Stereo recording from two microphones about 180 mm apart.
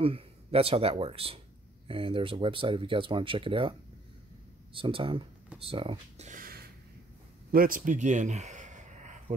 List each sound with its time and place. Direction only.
0.0 s speech: 30° right (ahead or behind)
4.7 s speech: 30° right (ahead or behind)